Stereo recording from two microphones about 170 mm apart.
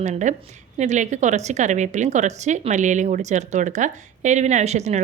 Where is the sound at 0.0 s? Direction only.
45° right (ahead or behind).